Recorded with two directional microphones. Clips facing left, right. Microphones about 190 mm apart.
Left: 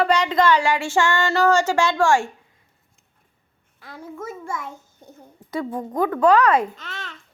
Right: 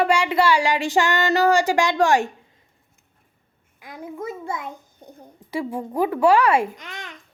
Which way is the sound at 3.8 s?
15° right (ahead or behind).